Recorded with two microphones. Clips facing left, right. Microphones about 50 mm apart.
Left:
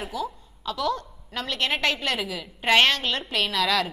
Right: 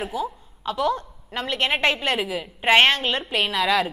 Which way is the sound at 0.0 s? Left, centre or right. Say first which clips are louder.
Right 3 dB; right.